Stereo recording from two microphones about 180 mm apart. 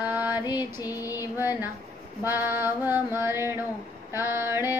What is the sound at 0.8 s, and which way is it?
Speech, 20° left (ahead or behind).